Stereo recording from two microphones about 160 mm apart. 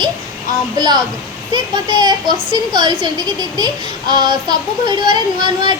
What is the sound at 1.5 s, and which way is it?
Child singing, 25° right (ahead or behind).